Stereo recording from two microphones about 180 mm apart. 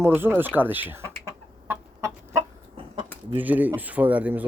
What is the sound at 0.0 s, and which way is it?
Chicken, 10° right (ahead or behind).